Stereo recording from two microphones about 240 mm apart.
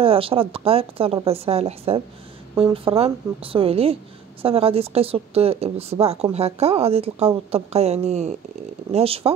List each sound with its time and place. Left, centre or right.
0.0 s a woman's voice: right